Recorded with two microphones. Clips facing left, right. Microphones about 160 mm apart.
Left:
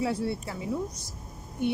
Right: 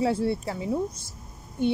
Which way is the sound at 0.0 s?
30° right (ahead or behind).